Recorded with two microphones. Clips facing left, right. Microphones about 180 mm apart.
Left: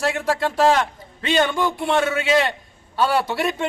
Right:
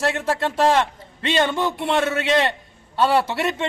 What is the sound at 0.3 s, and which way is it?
A man's voice, centre (ahead or behind).